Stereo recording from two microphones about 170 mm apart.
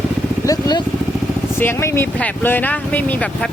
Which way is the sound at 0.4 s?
25° left (ahead or behind).